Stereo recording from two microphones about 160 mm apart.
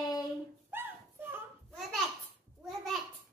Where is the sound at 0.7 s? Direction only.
15° right (ahead or behind).